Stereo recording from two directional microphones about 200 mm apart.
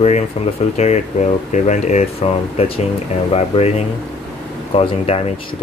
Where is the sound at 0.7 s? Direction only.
35° left (ahead or behind).